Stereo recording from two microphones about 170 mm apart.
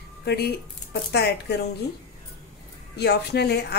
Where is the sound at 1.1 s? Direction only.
75° left (ahead or behind).